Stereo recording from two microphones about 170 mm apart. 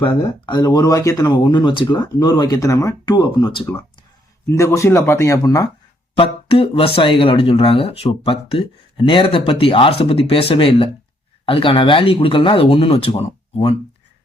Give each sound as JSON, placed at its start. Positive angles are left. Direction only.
{"t": 0.0, "sound": "speech", "side_deg": 25}
{"t": 4.4, "sound": "speech", "side_deg": 15}
{"t": 6.1, "sound": "speech", "side_deg": 35}